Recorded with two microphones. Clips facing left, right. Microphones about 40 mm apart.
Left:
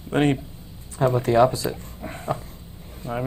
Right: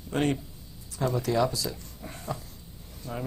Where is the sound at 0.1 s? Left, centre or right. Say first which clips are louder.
Left 6 dB; left.